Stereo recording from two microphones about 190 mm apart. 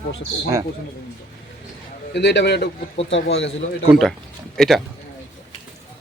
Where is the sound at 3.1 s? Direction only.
70° left (ahead or behind).